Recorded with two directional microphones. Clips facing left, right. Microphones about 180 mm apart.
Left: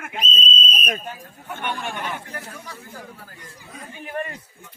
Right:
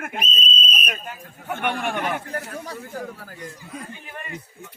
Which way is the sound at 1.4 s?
60° right (ahead or behind).